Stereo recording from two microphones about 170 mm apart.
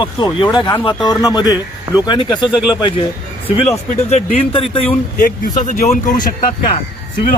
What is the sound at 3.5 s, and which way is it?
Speech, 40° left (ahead or behind).